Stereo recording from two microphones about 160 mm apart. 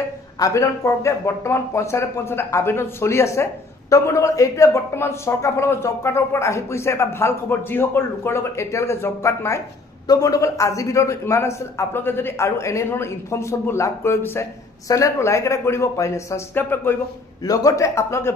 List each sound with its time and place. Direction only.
0.4 s a man's voice: 20° left (ahead or behind)